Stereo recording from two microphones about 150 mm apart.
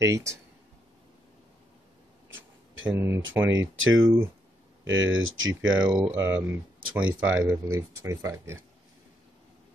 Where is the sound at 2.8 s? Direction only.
15° right (ahead or behind).